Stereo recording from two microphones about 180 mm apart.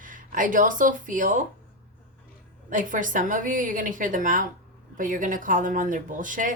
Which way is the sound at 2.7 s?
45° right (ahead or behind).